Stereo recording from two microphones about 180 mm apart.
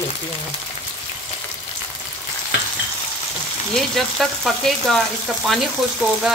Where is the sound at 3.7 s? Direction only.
Centre (ahead or behind).